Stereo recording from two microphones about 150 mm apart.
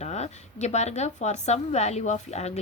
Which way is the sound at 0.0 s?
50° left (ahead or behind).